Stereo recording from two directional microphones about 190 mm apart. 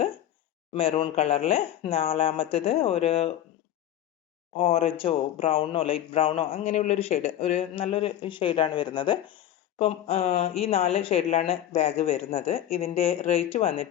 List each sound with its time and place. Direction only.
0.7 s speech: 30° left (ahead or behind)
4.5 s speech: 30° left (ahead or behind)